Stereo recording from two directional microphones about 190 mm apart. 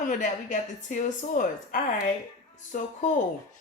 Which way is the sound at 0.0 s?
40° left (ahead or behind).